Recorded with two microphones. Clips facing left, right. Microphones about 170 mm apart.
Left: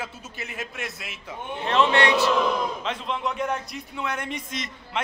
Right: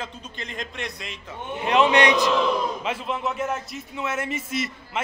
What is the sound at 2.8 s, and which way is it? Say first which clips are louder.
A man's voice: right 1 dB; 5° right (ahead or behind).